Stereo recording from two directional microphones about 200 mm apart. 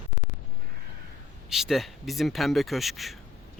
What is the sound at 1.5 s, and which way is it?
Speech, centre (ahead or behind).